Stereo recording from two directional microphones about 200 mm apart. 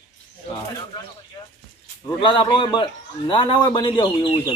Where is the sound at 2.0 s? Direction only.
25° left (ahead or behind).